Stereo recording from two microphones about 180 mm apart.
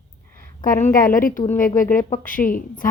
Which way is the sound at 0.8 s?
50° left (ahead or behind).